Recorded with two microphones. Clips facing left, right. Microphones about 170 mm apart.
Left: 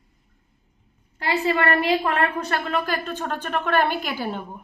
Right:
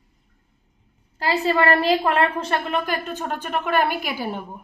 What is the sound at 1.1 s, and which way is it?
A woman's voice, 35° right (ahead or behind).